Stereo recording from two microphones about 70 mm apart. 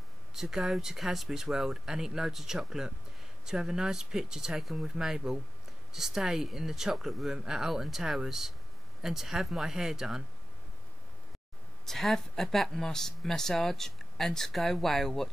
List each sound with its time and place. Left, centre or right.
0.3 s speech: centre
11.8 s speech: centre